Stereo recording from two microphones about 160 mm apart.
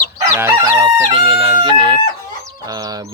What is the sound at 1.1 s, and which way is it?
Speech, 35° right (ahead or behind).